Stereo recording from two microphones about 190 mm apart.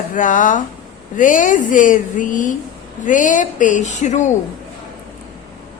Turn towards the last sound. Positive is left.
turn(degrees=40)  # may be behind; listen again after turning